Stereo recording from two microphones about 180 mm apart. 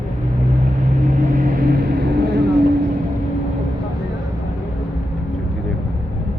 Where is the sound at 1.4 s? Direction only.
55° right (ahead or behind).